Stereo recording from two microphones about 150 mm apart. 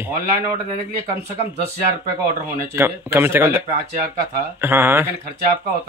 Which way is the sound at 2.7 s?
15° right (ahead or behind).